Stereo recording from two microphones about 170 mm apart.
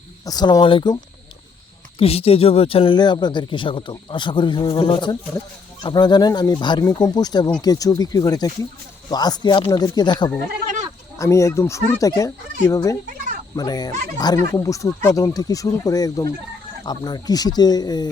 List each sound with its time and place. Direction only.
0.3 s speech: 25° left (ahead or behind)
2.0 s speech: 35° left (ahead or behind)